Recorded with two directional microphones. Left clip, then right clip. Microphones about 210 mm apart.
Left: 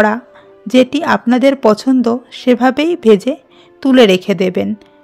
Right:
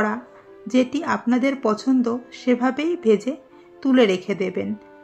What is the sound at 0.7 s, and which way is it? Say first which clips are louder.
A woman's voice: left 10 dB; 45° left (ahead or behind).